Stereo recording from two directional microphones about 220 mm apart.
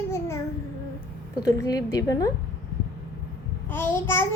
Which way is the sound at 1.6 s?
15° left (ahead or behind).